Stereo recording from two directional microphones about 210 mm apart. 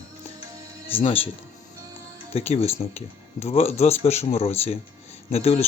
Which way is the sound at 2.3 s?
30° left (ahead or behind).